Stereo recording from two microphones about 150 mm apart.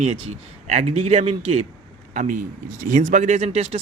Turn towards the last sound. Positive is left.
turn(degrees=-45)  # may be behind; listen again after turning